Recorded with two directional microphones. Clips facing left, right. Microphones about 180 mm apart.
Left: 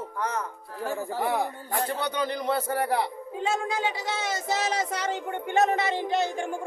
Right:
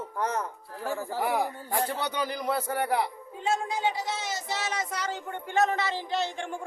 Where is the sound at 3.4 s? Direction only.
90° left; by 6.3 s 15° left (ahead or behind).